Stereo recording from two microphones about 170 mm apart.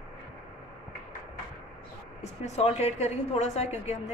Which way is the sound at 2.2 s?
40° left (ahead or behind).